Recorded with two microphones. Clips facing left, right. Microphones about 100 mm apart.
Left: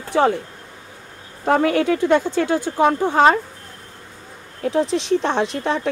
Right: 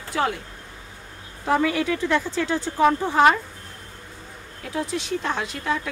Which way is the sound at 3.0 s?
20° left (ahead or behind).